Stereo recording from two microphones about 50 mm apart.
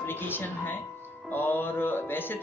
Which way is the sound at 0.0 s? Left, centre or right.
Left.